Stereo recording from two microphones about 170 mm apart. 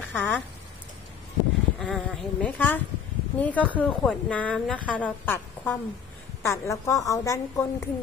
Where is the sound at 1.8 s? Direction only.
Centre (ahead or behind).